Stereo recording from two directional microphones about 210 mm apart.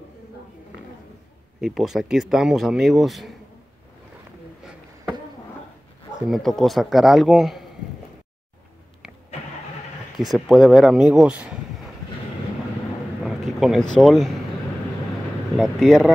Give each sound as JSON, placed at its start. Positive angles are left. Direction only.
{"t": 1.6, "sound": "speech", "side_deg": 0}
{"t": 6.2, "sound": "speech", "side_deg": 0}
{"t": 10.1, "sound": "speech", "side_deg": 0}
{"t": 13.2, "sound": "a sound", "side_deg": 0}
{"t": 13.9, "sound": "speech", "side_deg": 0}
{"t": 15.5, "sound": "speech", "side_deg": 0}